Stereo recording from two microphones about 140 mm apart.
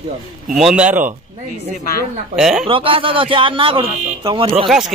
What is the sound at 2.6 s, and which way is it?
A man's voice, 40° right (ahead or behind).